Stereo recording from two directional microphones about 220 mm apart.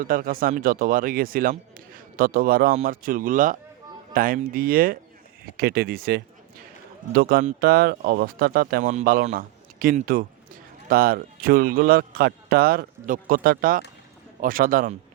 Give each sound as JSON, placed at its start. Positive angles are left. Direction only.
{"t": 0.0, "sound": "speech", "side_deg": -40}